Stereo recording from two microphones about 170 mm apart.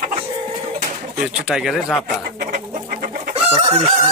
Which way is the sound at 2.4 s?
55° right (ahead or behind).